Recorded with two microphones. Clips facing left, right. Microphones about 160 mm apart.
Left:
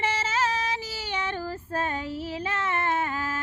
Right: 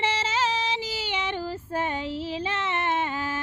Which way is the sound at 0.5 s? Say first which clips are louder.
Right 2 dB; 25° right (ahead or behind).